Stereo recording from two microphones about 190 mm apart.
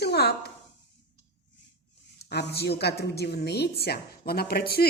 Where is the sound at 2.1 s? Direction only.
60° left (ahead or behind).